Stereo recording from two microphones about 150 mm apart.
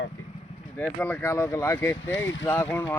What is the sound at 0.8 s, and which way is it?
Speech, 10° left (ahead or behind).